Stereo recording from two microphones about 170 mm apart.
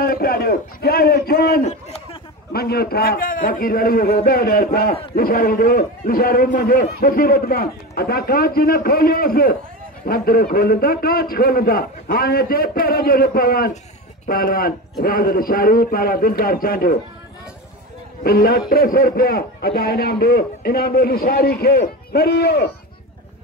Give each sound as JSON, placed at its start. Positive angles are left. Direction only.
{"t": 0.0, "sound": "a man's voice", "side_deg": 60}
{"t": 1.6, "sound": "a sound", "side_deg": 40}
{"t": 2.5, "sound": "a man's voice", "side_deg": 65}
{"t": 18.2, "sound": "a man's voice", "side_deg": 60}